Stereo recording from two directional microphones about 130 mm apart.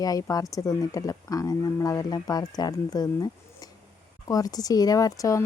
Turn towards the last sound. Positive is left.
turn(degrees=25)  # may be behind; listen again after turning